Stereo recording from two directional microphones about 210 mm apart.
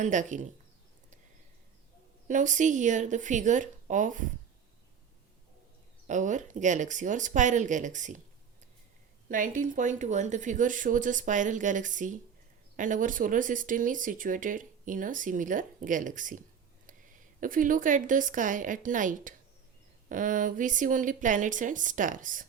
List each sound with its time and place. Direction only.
0.0 s speech: 35° right (ahead or behind)
2.2 s speech: 35° right (ahead or behind)
6.1 s speech: 35° right (ahead or behind)
9.3 s speech: 40° right (ahead or behind)
17.4 s speech: 40° right (ahead or behind)